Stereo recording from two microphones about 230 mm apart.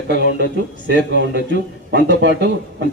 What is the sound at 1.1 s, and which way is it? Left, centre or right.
A man's voice, right.